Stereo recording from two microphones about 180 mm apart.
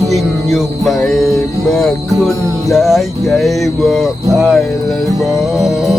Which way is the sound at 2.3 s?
20° right (ahead or behind).